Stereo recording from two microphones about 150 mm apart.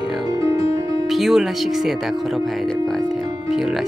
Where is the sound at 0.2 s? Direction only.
25° right (ahead or behind).